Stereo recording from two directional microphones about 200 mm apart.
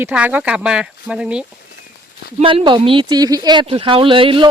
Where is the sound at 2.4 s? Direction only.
25° right (ahead or behind).